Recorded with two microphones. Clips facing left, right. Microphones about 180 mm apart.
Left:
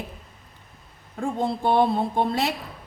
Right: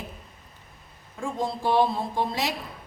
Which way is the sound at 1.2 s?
60° left (ahead or behind).